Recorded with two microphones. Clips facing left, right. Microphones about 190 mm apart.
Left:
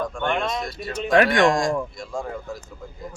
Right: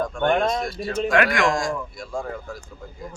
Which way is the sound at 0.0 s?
45° right (ahead or behind).